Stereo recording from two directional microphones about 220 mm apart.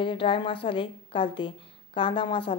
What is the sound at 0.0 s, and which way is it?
Speech, 25° left (ahead or behind).